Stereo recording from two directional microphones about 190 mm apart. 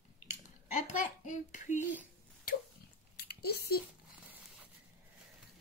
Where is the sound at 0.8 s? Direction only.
40° left (ahead or behind).